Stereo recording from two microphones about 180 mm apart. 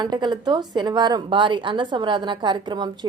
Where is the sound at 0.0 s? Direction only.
25° right (ahead or behind).